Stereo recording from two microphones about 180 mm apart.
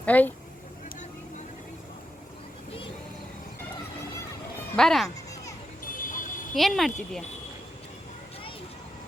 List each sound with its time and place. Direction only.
0.0 s speech: 10° left (ahead or behind)
4.8 s speech: centre (ahead or behind)
5.0 s children playing: 20° left (ahead or behind)
5.8 s vehicle: 50° left (ahead or behind)
6.5 s speech: centre (ahead or behind)